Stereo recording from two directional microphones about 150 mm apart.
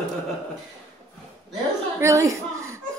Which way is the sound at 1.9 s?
20° right (ahead or behind).